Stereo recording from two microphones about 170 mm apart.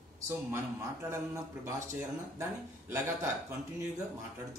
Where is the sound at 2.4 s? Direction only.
15° right (ahead or behind).